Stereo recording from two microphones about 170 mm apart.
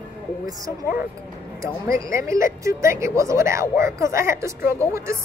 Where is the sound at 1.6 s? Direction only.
20° right (ahead or behind).